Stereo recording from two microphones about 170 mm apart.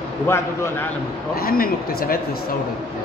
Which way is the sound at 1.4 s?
60° left (ahead or behind).